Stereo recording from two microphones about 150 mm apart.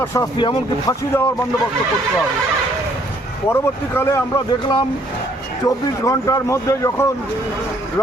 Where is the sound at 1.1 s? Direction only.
15° left (ahead or behind).